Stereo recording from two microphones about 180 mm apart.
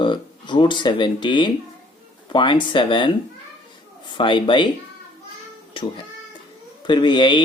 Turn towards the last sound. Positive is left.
turn(degrees=25)  # may be behind; listen again after turning